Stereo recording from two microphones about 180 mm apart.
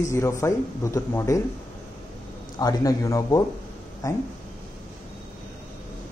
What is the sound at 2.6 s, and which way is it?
Speech, 20° left (ahead or behind).